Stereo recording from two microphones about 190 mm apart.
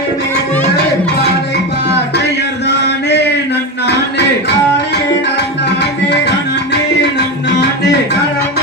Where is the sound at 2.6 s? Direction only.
65° left (ahead or behind).